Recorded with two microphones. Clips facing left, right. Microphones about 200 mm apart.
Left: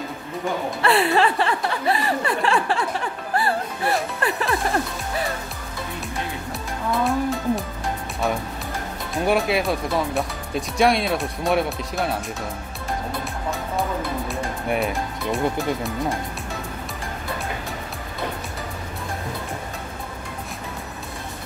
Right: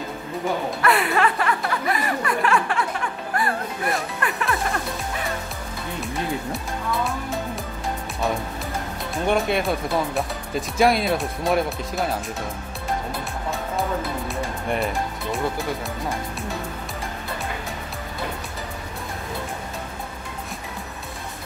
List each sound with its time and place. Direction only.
0.8 s chuckle: 30° left (ahead or behind)
4.2 s music: 30° left (ahead or behind)
7.1 s music: centre (ahead or behind)
9.1 s speech: 5° left (ahead or behind)
14.2 s speech: centre (ahead or behind)